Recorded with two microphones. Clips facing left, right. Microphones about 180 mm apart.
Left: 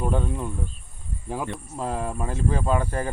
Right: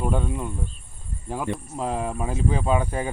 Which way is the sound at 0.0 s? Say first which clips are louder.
Even; 5° right (ahead or behind).